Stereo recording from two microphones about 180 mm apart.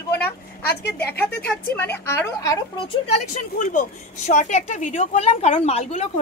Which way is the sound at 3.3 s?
45° left (ahead or behind).